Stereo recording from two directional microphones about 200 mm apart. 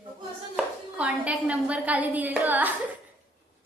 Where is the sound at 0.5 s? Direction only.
5° right (ahead or behind).